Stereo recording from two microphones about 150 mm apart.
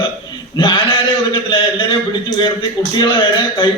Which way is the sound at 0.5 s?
35° left (ahead or behind).